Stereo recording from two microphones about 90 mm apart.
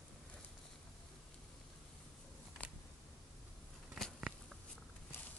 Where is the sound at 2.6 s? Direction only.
15° left (ahead or behind).